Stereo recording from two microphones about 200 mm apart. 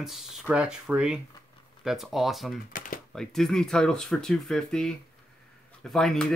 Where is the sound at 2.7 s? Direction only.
45° left (ahead or behind).